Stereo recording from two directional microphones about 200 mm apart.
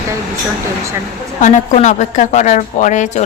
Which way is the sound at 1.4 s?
35° left (ahead or behind).